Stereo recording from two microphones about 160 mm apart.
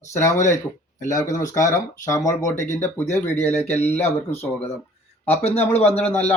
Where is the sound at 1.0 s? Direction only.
20° left (ahead or behind).